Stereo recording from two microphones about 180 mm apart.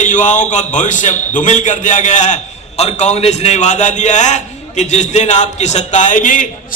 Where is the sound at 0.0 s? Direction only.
45° left (ahead or behind).